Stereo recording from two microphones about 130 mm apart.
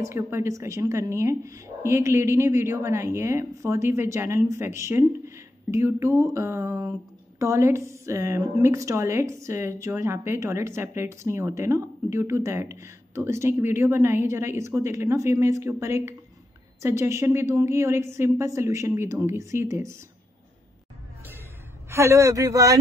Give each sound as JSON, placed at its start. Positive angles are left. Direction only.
{"t": 0.0, "sound": "a woman's voice", "side_deg": -20}
{"t": 21.8, "sound": "a woman's voice", "side_deg": -20}